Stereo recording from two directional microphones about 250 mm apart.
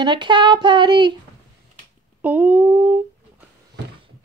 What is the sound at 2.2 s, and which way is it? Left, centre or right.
Speech, centre.